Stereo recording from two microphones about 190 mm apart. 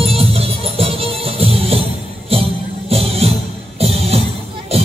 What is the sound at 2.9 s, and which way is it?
Music, 30° right (ahead or behind).